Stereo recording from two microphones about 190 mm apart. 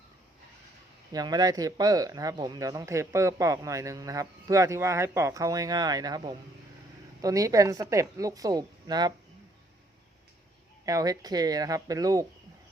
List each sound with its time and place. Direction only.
1.1 s speech: 20° right (ahead or behind)
10.8 s speech: 20° right (ahead or behind)